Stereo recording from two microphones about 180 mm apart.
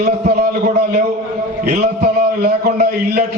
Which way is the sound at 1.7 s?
55° right (ahead or behind).